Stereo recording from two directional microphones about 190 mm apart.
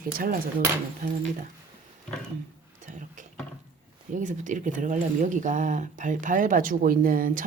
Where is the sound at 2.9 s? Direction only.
40° right (ahead or behind).